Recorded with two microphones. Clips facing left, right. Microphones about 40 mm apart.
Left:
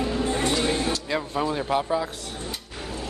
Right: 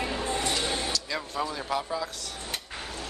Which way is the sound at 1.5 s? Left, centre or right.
Left.